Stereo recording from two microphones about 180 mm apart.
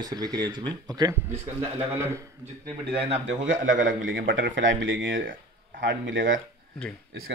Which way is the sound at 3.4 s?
90° right.